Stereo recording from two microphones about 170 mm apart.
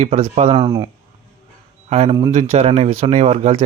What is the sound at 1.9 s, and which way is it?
Speech, 40° right (ahead or behind).